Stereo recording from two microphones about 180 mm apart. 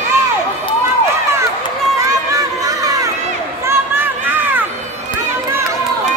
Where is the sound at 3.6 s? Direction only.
15° right (ahead or behind).